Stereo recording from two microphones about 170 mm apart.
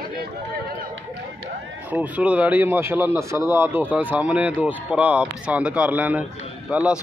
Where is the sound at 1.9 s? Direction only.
10° right (ahead or behind).